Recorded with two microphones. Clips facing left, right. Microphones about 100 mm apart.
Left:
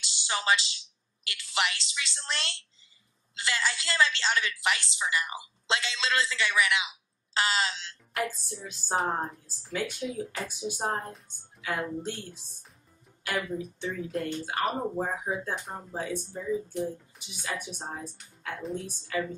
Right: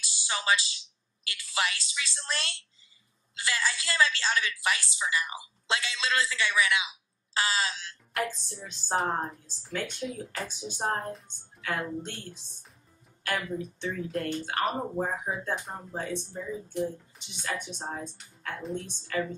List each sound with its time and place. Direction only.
0.0 s a sound: 25° left (ahead or behind)
1.5 s a woman's voice: 25° left (ahead or behind)
8.6 s a woman's voice: 5° left (ahead or behind)